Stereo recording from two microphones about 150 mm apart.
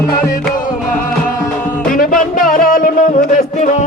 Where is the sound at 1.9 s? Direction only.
65° left (ahead or behind).